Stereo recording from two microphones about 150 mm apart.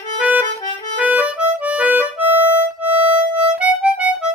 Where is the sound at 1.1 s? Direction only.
10° right (ahead or behind).